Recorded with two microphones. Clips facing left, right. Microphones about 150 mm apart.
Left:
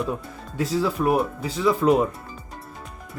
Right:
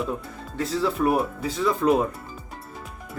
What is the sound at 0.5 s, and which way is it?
Speech, 10° left (ahead or behind).